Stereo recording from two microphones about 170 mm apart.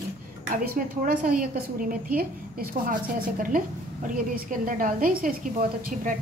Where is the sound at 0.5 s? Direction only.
55° right (ahead or behind).